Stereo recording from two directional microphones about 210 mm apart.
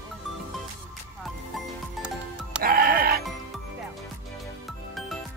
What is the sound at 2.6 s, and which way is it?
Music, 45° right (ahead or behind).